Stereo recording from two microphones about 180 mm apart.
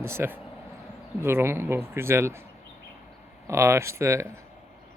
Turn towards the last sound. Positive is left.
turn(degrees=-15)  # may be behind; listen again after turning